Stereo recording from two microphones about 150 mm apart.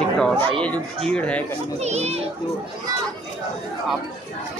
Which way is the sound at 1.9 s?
45° right (ahead or behind).